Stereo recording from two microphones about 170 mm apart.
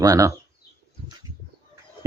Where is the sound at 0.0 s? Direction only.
20° right (ahead or behind).